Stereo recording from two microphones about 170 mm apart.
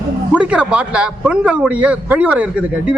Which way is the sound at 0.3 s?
5° right (ahead or behind).